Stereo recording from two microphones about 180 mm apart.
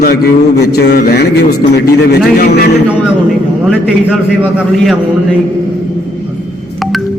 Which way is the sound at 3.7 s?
5° right (ahead or behind).